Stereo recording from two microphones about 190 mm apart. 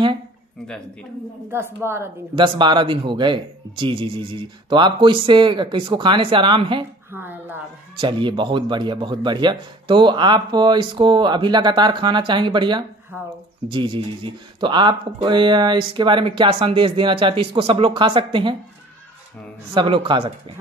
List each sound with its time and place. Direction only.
1.5 s speech: 15° right (ahead or behind)
2.3 s speech: 25° right (ahead or behind)
7.1 s a sound: 10° right (ahead or behind)
8.0 s speech: 25° right (ahead or behind)
19.7 s speech: 25° right (ahead or behind)